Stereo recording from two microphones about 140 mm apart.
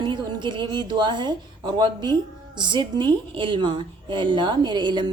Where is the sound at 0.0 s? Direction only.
30° right (ahead or behind).